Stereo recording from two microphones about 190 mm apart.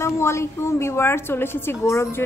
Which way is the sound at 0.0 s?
15° left (ahead or behind).